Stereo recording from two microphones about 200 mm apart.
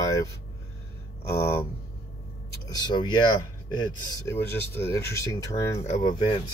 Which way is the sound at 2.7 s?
20° left (ahead or behind).